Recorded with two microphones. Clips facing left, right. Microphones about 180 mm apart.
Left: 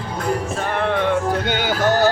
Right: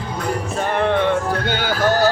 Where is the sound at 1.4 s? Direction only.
20° left (ahead or behind).